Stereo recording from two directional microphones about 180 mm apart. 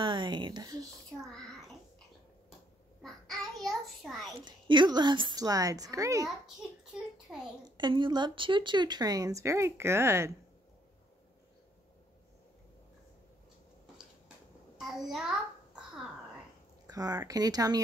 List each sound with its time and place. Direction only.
0.0 s speech: 25° right (ahead or behind)
1.2 s a child's voice: centre (ahead or behind)
3.0 s a sound: centre (ahead or behind)
4.4 s speech: 25° right (ahead or behind)
7.3 s a woman's voice: 5° right (ahead or behind)
7.7 s speech: 25° right (ahead or behind)
14.8 s a child's voice: centre (ahead or behind)
16.8 s speech: 20° right (ahead or behind)